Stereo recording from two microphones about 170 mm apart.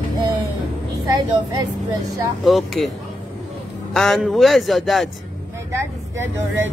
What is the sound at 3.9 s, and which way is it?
A man's voice, centre (ahead or behind).